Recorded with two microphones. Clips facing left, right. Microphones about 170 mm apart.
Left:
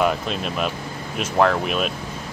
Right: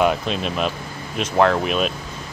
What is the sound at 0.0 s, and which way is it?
Speech, centre (ahead or behind).